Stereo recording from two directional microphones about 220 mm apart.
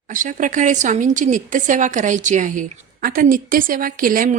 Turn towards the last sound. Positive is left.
turn(degrees=-40)  # may be behind; listen again after turning